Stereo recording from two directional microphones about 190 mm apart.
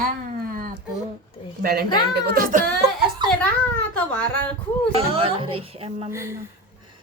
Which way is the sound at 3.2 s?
25° right (ahead or behind).